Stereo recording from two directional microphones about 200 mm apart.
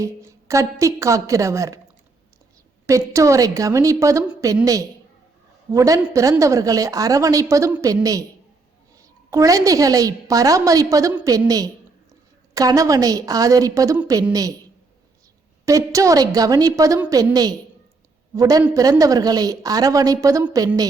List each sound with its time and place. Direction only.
0.0 s a woman's voice: 15° right (ahead or behind)
2.8 s a woman's voice: 15° right (ahead or behind)
15.6 s a woman's voice: 15° right (ahead or behind)